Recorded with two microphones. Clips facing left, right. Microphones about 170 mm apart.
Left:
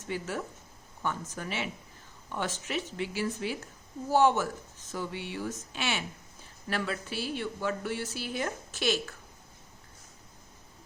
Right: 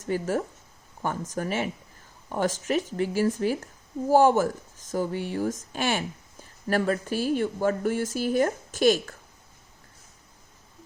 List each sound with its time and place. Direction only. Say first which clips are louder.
0.0 s speech: right 8 dB; 45° right (ahead or behind)